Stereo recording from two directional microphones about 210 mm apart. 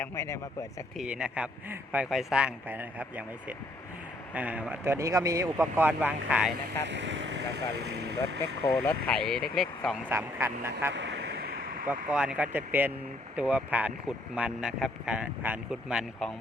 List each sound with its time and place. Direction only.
0.0 s speech: 10° left (ahead or behind)
0.9 s speech: 5° right (ahead or behind)
4.4 s speech: 5° right (ahead or behind)
6.8 s speech: 60° right (ahead or behind)
8.4 s speech: 10° left (ahead or behind)
10.1 s speech: 10° right (ahead or behind)
10.9 s a sound: 55° right (ahead or behind)
11.9 s speech: 5° right (ahead or behind)